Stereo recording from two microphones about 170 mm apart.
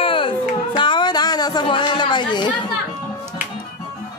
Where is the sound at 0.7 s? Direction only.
25° left (ahead or behind).